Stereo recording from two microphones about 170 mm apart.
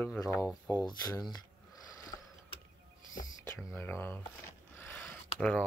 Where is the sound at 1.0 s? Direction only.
20° left (ahead or behind).